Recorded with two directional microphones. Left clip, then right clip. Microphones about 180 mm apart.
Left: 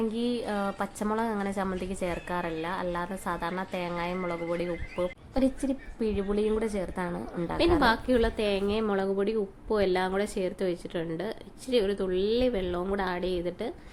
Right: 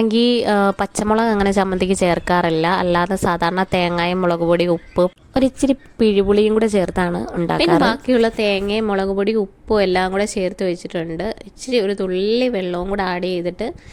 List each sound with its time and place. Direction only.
0.0 s a woman's voice: 55° right (ahead or behind); by 13.7 s 35° right (ahead or behind)